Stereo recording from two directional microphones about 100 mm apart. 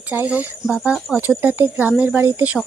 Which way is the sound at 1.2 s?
20° right (ahead or behind).